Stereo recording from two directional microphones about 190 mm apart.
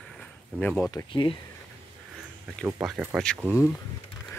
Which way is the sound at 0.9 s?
20° left (ahead or behind).